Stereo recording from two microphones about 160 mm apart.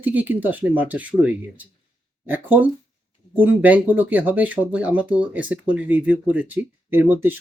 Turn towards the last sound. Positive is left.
turn(degrees=-10)  # may be behind; listen again after turning